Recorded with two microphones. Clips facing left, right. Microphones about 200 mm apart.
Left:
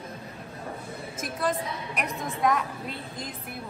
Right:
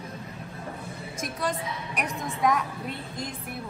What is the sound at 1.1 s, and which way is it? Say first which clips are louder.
A woman's voice: left 2 dB; centre (ahead or behind).